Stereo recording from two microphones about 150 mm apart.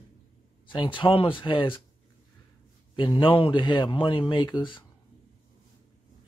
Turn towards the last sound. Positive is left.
turn(degrees=30)  # may be behind; listen again after turning